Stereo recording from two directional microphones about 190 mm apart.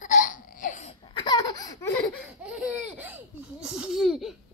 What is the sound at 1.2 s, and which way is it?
Laughter, 20° left (ahead or behind).